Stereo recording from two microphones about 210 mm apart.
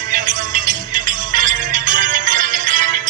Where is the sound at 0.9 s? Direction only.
40° right (ahead or behind).